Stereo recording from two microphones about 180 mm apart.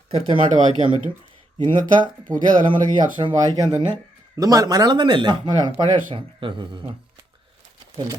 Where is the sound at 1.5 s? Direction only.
25° right (ahead or behind).